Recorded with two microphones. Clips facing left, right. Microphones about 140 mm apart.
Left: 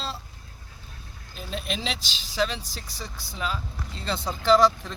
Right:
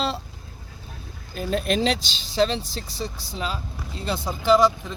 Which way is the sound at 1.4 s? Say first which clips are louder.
Right 9 dB; 50° right (ahead or behind).